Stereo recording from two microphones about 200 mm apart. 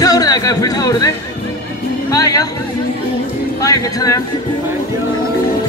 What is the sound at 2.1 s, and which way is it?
Speech, 15° left (ahead or behind).